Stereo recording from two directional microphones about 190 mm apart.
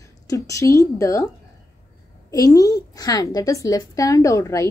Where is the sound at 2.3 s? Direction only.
20° left (ahead or behind).